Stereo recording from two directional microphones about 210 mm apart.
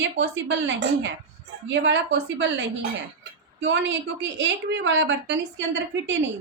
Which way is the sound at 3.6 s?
60° right (ahead or behind).